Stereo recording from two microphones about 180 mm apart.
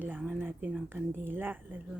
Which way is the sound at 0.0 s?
10° right (ahead or behind).